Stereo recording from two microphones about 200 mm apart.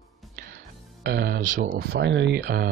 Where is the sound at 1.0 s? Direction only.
55° right (ahead or behind).